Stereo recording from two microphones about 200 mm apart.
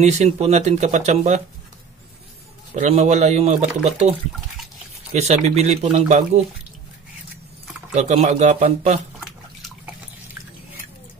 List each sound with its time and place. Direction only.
0.0 s speech: 35° right (ahead or behind)
2.7 s speech: 35° right (ahead or behind)
5.1 s speech: 35° right (ahead or behind)
7.9 s speech: 35° right (ahead or behind)